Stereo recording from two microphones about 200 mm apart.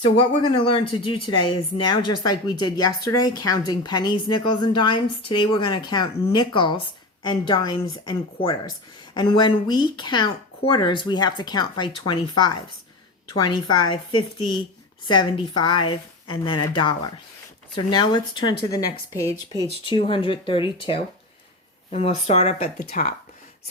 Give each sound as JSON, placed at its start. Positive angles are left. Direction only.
{"t": 0.0, "sound": "speech", "side_deg": 25}